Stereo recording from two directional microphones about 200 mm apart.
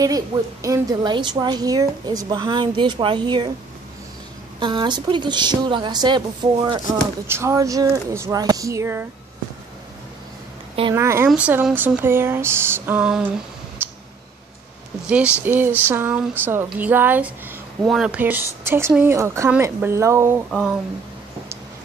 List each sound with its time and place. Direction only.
0.0 s a woman's voice: 15° right (ahead or behind)
4.6 s a woman's voice: 25° right (ahead or behind)
11.0 s speech: 15° right (ahead or behind)
13.8 s clicking: 10° right (ahead or behind)
15.0 s speech: 5° right (ahead or behind)